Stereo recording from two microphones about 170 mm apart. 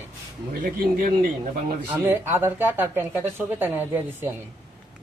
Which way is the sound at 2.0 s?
15° right (ahead or behind).